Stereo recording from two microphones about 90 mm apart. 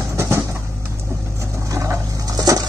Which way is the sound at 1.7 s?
35° right (ahead or behind).